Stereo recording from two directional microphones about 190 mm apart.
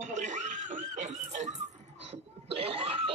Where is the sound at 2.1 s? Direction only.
30° right (ahead or behind).